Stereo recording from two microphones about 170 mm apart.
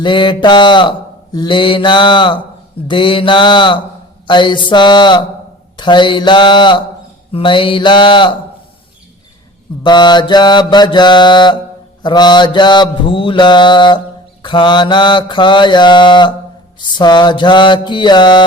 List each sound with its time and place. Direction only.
0.0 s mantra: 25° left (ahead or behind)
9.8 s mantra: 25° left (ahead or behind)